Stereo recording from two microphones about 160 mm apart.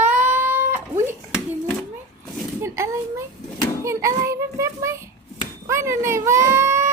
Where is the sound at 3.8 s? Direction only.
20° right (ahead or behind).